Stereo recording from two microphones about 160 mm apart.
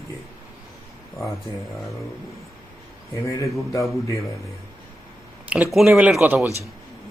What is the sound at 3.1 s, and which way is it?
Speech, 20° left (ahead or behind).